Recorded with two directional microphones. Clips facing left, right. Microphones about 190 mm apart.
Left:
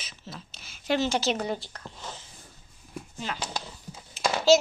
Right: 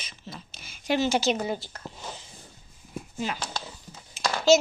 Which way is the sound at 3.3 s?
10° right (ahead or behind).